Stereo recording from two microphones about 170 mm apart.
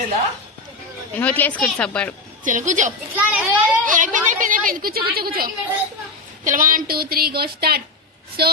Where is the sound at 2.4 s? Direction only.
50° right (ahead or behind); by 8.5 s 70° right (ahead or behind).